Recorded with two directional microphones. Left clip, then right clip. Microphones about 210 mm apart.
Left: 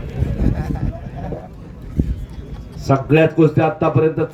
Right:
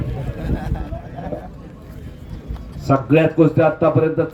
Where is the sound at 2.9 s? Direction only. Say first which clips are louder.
Left 1 dB; 50° left (ahead or behind).